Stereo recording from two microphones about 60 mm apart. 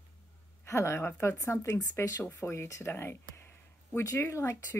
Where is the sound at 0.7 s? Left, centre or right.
Left.